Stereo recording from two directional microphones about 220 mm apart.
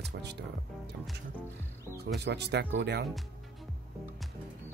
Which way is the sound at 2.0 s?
50° right (ahead or behind).